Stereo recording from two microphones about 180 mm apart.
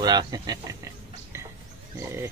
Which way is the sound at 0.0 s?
25° right (ahead or behind).